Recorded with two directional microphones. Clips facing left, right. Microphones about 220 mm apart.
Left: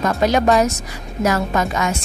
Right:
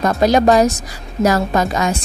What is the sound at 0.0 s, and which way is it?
A woman's voice, 35° right (ahead or behind).